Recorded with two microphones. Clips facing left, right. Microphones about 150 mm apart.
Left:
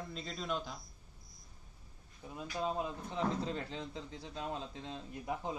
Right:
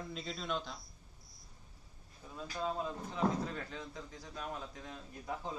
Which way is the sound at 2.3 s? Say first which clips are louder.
Left 1 dB; 20° left (ahead or behind).